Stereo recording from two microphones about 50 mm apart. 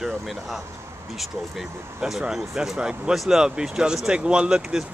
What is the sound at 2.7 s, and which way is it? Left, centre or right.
Speech, centre.